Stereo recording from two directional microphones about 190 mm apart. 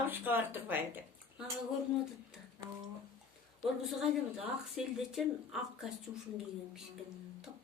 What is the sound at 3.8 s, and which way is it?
A woman's voice, centre (ahead or behind).